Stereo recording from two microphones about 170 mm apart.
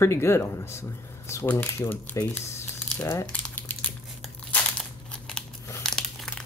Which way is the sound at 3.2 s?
5° left (ahead or behind).